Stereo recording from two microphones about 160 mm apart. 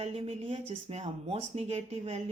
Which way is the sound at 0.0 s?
40° right (ahead or behind).